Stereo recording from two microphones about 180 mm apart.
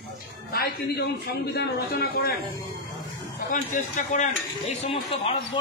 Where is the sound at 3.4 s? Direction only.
45° left (ahead or behind).